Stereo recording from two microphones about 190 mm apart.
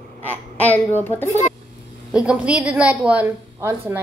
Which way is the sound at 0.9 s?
10° left (ahead or behind).